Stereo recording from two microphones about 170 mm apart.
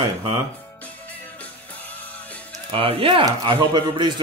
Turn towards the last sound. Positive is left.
turn(degrees=-25)  # may be behind; listen again after turning